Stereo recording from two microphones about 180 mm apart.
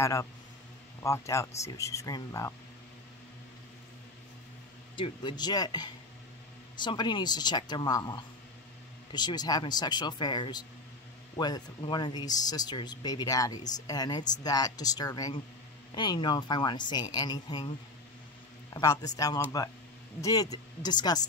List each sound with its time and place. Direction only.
0.0 s speech: 20° left (ahead or behind)
4.9 s speech: 25° left (ahead or behind)